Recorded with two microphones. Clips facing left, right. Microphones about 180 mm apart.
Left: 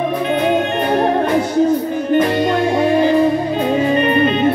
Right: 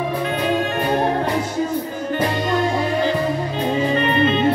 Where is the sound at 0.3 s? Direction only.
20° left (ahead or behind).